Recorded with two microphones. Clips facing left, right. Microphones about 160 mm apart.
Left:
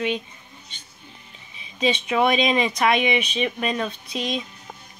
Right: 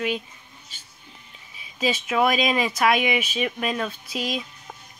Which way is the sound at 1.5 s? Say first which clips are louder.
Left 2 dB; 5° right (ahead or behind).